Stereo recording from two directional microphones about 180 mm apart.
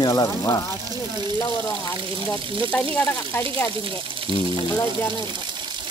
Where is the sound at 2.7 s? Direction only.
10° left (ahead or behind).